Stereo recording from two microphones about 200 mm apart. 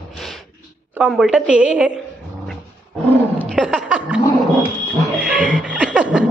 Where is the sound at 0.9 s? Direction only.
5° right (ahead or behind).